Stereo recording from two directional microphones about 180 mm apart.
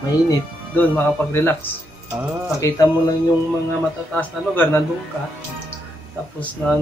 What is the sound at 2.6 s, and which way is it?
Speech, 20° left (ahead or behind).